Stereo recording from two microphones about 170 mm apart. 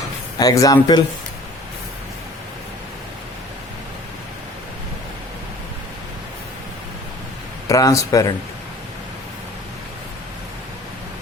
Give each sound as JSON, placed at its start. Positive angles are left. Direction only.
{"t": 0.3, "sound": "speech", "side_deg": 20}
{"t": 7.7, "sound": "speech", "side_deg": 20}